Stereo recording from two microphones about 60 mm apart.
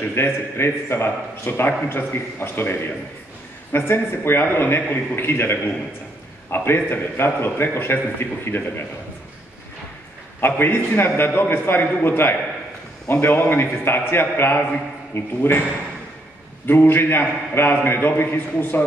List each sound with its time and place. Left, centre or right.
0.1 s a man's voice: left
10.4 s a man's voice: left
16.6 s a man's voice: left